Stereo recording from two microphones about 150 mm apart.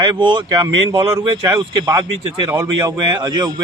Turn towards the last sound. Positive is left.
turn(degrees=-30)  # may be behind; listen again after turning